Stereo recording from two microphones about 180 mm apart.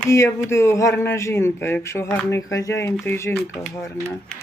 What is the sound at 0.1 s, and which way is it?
Speech, 15° left (ahead or behind).